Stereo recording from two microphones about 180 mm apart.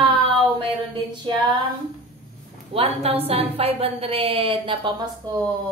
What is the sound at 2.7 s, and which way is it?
A woman's voice, 35° right (ahead or behind).